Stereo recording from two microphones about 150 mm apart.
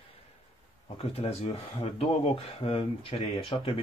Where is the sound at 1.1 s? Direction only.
45° left (ahead or behind).